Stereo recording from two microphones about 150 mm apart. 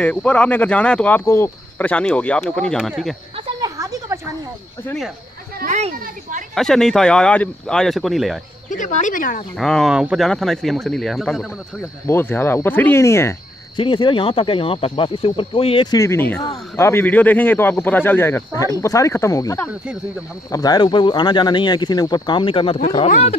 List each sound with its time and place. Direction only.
0.0 s speech: 10° left (ahead or behind)
3.6 s a sound: 25° right (ahead or behind)
6.5 s speech: 5° left (ahead or behind)
8.6 s speech: 60° left (ahead or behind)
9.6 s speech: 5° left (ahead or behind)
12.1 s speech: 15° left (ahead or behind)
13.7 s speech: 35° left (ahead or behind)
23.0 s speech: 55° left (ahead or behind)